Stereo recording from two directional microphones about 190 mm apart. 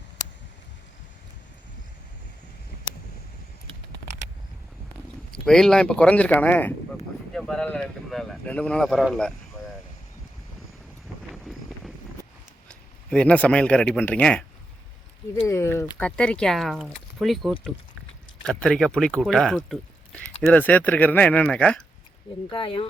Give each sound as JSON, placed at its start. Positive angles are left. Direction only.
{"t": 5.3, "sound": "speech", "side_deg": 5}
{"t": 11.3, "sound": "a sound", "side_deg": 0}
{"t": 12.6, "sound": "a man's voice", "side_deg": 5}
{"t": 15.4, "sound": "speech", "side_deg": 15}
{"t": 22.4, "sound": "speech", "side_deg": 25}